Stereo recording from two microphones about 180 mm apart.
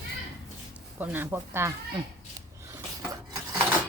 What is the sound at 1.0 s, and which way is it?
Speech, 10° right (ahead or behind).